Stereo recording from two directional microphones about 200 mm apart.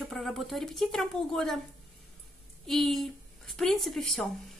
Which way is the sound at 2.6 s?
Centre (ahead or behind).